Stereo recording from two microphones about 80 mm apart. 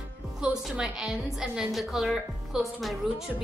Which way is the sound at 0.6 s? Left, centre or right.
Centre.